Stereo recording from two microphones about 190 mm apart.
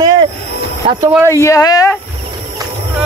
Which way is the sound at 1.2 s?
15° left (ahead or behind).